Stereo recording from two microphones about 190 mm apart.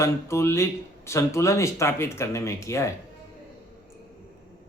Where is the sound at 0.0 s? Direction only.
15° left (ahead or behind).